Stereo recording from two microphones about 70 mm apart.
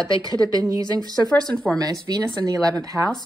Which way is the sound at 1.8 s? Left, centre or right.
Right.